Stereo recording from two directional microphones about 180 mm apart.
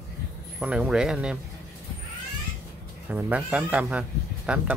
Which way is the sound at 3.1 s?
10° right (ahead or behind).